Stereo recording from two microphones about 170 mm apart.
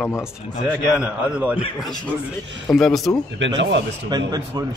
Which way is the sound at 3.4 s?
90° right.